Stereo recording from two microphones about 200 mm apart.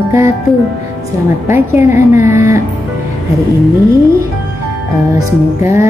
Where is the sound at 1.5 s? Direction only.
10° right (ahead or behind).